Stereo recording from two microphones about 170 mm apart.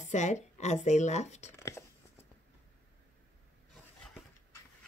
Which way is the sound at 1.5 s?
15° left (ahead or behind).